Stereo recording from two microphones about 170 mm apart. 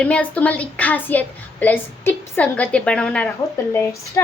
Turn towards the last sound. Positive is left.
turn(degrees=15)  # may be behind; listen again after turning